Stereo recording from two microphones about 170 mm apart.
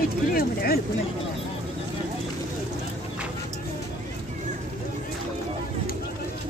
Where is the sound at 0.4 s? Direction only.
60° left (ahead or behind).